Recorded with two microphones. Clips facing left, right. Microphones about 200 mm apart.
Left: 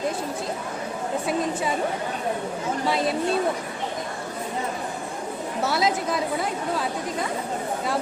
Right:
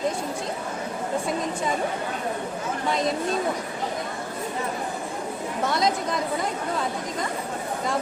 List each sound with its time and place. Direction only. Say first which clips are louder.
5.6 s a woman's voice: left 1 dB; 5° left (ahead or behind)